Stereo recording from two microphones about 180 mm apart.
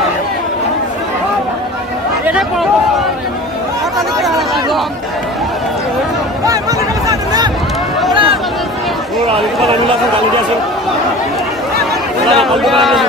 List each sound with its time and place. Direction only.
2.2 s chatter: 5° right (ahead or behind)
4.2 s chatter: centre (ahead or behind)
8.1 s chatter: 30° right (ahead or behind)
9.3 s a sound: 30° right (ahead or behind)
12.4 s a man's voice: centre (ahead or behind)